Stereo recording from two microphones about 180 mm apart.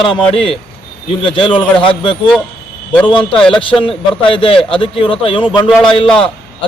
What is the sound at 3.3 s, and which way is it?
Speech, 5° left (ahead or behind).